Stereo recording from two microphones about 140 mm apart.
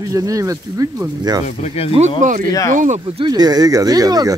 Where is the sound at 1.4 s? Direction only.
50° left (ahead or behind).